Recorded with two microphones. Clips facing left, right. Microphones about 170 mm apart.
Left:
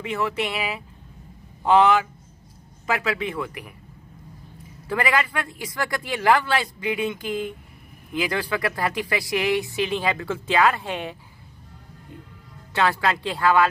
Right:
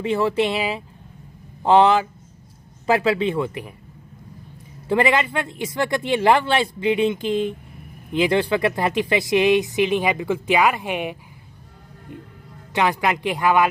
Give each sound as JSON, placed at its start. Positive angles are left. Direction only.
{"t": 0.0, "sound": "speech", "side_deg": -30}
{"t": 4.8, "sound": "speech", "side_deg": -25}
{"t": 12.7, "sound": "speech", "side_deg": -15}